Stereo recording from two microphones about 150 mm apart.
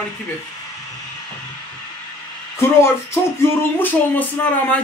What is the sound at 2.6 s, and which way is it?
A man's voice, 15° left (ahead or behind).